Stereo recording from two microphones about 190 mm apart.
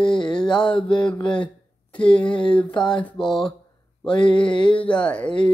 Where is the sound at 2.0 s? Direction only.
5° left (ahead or behind).